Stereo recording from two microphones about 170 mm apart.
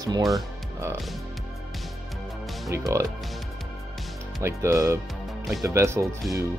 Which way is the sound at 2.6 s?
20° right (ahead or behind).